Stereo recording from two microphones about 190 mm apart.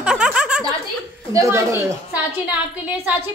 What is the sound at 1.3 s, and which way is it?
A woman's voice, 15° right (ahead or behind).